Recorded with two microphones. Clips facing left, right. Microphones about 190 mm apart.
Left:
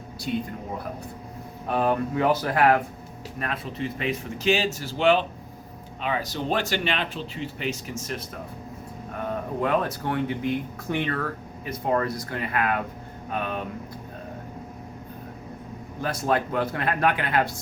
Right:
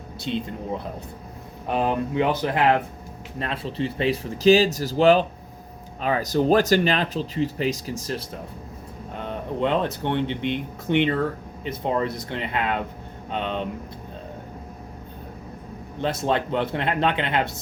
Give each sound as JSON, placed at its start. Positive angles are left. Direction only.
{"t": 0.3, "sound": "speech", "side_deg": -25}
{"t": 1.7, "sound": "speech", "side_deg": -20}
{"t": 9.1, "sound": "speech", "side_deg": -25}
{"t": 16.0, "sound": "speech", "side_deg": -25}